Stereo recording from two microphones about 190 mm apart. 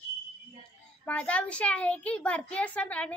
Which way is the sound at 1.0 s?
5° left (ahead or behind).